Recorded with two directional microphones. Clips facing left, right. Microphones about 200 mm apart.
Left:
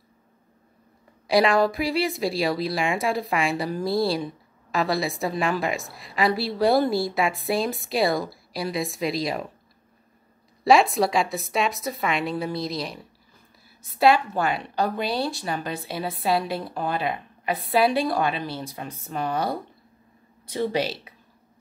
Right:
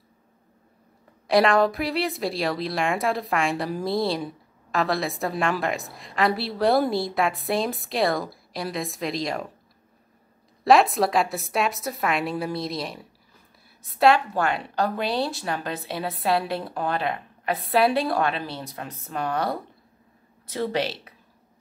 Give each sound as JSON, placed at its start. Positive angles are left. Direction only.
{"t": 1.2, "sound": "a woman's voice", "side_deg": 0}
{"t": 10.6, "sound": "a woman's voice", "side_deg": 0}